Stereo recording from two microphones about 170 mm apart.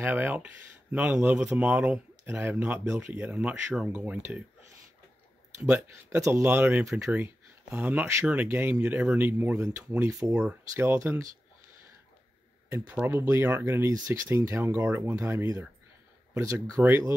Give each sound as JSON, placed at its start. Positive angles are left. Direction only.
{"t": 0.0, "sound": "a man's voice", "side_deg": -10}
{"t": 5.7, "sound": "a man's voice", "side_deg": -15}
{"t": 12.7, "sound": "a man's voice", "side_deg": -10}